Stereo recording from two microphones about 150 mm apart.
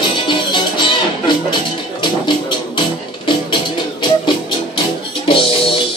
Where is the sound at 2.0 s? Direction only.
30° left (ahead or behind).